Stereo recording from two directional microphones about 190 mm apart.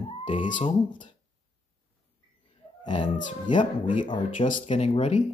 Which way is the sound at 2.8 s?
25° left (ahead or behind).